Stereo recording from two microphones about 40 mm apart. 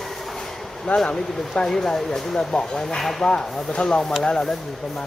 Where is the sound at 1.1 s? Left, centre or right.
Centre.